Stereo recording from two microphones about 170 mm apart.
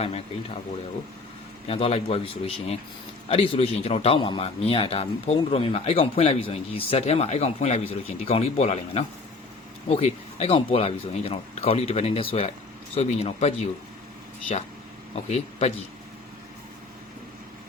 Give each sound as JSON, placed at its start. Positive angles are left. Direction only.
{"t": 1.6, "sound": "a man's voice", "side_deg": 35}
{"t": 15.1, "sound": "speech", "side_deg": 40}